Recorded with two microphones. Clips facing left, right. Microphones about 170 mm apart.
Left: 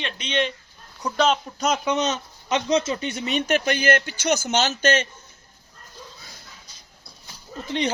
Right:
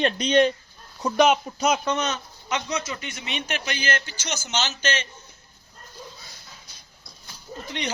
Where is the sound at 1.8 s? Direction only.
20° left (ahead or behind); by 5.1 s 50° left (ahead or behind).